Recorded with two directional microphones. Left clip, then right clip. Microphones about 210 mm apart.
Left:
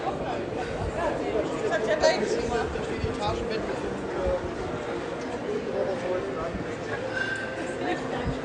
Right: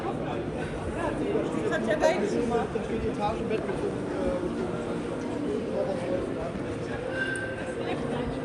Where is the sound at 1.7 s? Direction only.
40° right (ahead or behind).